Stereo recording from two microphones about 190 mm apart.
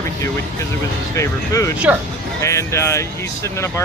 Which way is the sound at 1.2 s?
15° left (ahead or behind).